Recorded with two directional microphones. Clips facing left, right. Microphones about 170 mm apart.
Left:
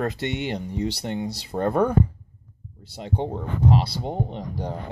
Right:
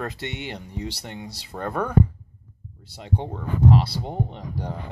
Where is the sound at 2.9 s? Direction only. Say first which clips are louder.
Left 2 dB; 20° left (ahead or behind).